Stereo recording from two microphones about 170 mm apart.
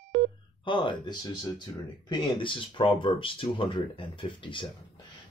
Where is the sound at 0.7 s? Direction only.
30° left (ahead or behind).